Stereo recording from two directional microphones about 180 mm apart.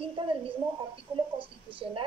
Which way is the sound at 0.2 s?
30° right (ahead or behind).